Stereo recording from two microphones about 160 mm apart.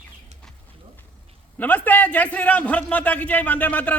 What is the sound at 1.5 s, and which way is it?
A man's voice, 10° left (ahead or behind).